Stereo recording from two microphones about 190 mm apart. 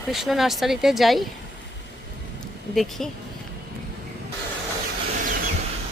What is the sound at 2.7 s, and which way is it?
Speech, centre (ahead or behind).